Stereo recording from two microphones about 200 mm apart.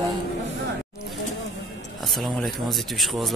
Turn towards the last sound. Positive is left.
turn(degrees=0)  # may be behind; listen again after turning